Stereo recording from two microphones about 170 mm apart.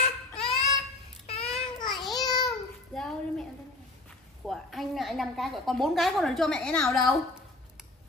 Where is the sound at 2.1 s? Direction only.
25° left (ahead or behind).